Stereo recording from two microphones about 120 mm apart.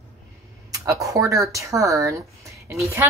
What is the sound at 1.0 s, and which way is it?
Speech, 25° right (ahead or behind).